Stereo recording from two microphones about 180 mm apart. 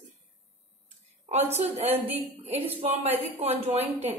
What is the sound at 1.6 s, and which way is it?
Speech, 35° right (ahead or behind).